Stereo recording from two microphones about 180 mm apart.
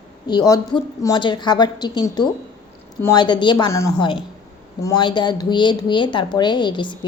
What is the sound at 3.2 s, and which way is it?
A woman's voice, 25° left (ahead or behind).